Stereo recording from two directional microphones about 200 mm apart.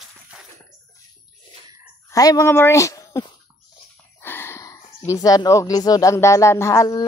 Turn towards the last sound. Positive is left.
turn(degrees=15)  # may be behind; listen again after turning